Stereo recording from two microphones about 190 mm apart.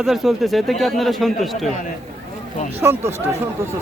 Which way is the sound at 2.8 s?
10° right (ahead or behind).